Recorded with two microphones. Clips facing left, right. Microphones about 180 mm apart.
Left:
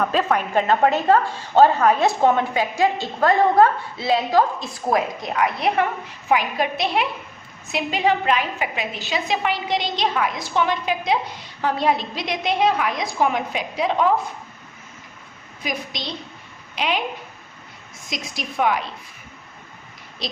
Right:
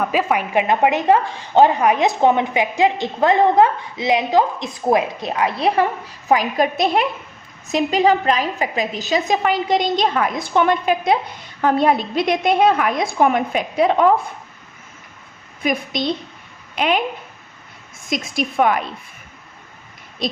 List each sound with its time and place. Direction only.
0.0 s a woman's voice: 10° right (ahead or behind); by 14.1 s 55° right (ahead or behind)
15.6 s a woman's voice: 55° right (ahead or behind)
18.1 s a woman's voice: 50° right (ahead or behind)